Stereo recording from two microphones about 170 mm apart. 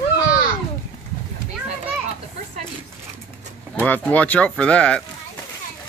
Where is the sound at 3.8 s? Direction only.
10° left (ahead or behind).